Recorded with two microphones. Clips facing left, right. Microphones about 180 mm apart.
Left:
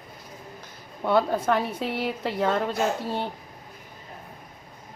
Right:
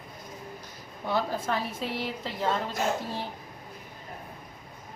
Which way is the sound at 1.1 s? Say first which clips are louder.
Left 7 dB; 60° left (ahead or behind).